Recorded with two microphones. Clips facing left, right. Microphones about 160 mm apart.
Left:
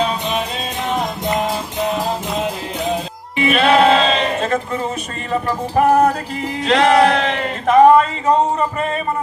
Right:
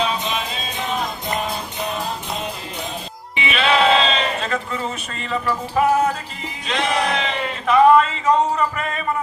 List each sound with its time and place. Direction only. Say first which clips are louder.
3.3 s music: left 6 dB; 50° left (ahead or behind); by 9.0 s 30° left (ahead or behind)